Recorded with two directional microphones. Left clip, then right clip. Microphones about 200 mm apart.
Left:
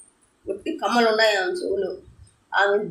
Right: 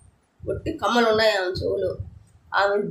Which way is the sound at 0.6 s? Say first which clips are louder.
Even; 20° right (ahead or behind).